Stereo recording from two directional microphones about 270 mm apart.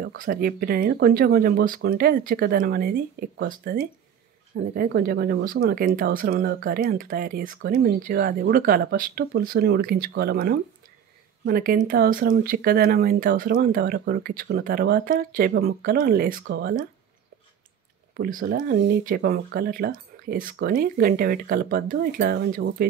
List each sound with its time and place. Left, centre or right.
0.0 s speech: right
18.1 s speech: right